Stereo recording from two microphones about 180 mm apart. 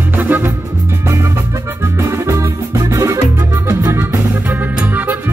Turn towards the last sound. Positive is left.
turn(degrees=-10)  # may be behind; listen again after turning